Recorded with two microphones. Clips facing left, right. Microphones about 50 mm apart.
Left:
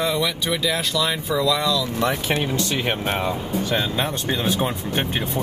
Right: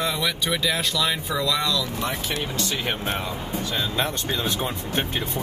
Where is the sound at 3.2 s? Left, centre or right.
Left.